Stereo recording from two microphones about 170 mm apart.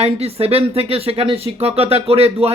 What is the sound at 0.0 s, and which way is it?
Speech, 35° right (ahead or behind).